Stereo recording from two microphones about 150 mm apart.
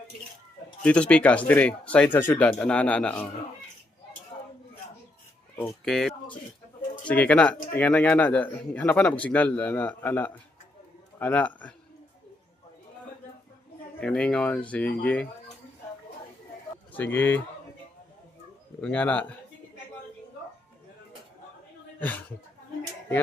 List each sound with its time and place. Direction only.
0.8 s speech: 5° left (ahead or behind)
4.3 s a sound: 40° left (ahead or behind)
5.8 s speech: 5° left (ahead or behind)
14.0 s speech: 5° left (ahead or behind)
16.9 s speech: 10° left (ahead or behind)
18.8 s speech: 10° left (ahead or behind)